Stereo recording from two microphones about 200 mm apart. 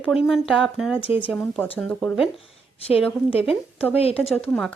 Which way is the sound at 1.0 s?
25° left (ahead or behind).